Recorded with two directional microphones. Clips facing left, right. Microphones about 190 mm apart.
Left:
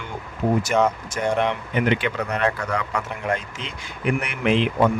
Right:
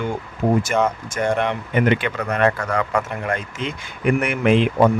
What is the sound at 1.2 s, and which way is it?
Speech, 50° right (ahead or behind).